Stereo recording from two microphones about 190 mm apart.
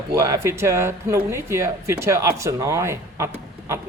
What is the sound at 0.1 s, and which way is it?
Speech, 15° right (ahead or behind).